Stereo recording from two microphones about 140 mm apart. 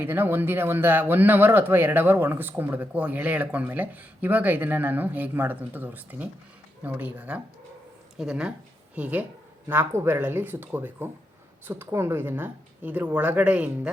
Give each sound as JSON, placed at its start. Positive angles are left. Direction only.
{"t": 0.0, "sound": "speech", "side_deg": -15}